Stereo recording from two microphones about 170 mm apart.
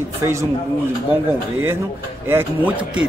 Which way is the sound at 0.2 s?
15° right (ahead or behind).